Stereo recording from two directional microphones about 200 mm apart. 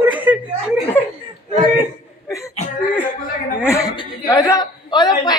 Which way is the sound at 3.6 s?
15° left (ahead or behind).